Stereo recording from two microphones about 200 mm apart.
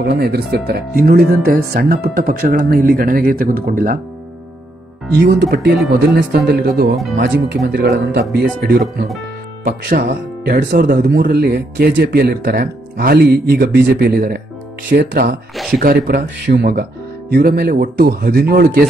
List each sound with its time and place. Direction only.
0.0 s speech: 55° right (ahead or behind)
5.9 s speech: 50° right (ahead or behind)
15.5 s a sound: centre (ahead or behind)
15.8 s speech: 45° right (ahead or behind)